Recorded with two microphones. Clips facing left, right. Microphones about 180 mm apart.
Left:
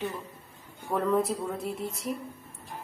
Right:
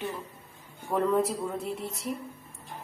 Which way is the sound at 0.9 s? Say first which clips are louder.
Right 2 dB; 5° right (ahead or behind).